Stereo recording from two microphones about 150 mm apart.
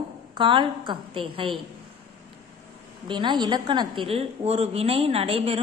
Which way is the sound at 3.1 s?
30° right (ahead or behind).